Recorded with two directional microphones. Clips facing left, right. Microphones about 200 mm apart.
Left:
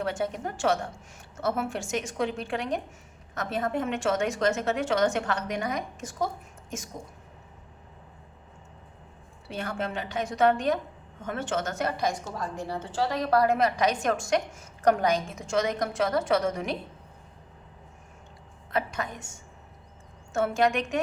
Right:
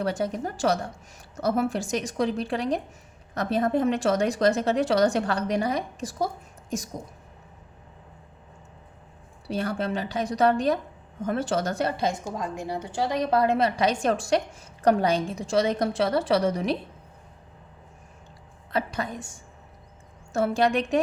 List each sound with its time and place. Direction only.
0.0 s a woman's voice: 35° right (ahead or behind)
9.5 s a woman's voice: 35° right (ahead or behind)
12.2 s a woman's voice: 15° right (ahead or behind); by 16.7 s 35° right (ahead or behind)
18.7 s a woman's voice: 35° right (ahead or behind)